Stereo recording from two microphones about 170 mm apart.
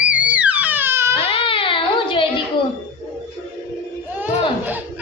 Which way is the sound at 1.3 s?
30° left (ahead or behind).